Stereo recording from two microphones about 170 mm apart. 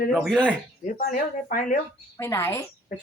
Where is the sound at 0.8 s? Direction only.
50° left (ahead or behind).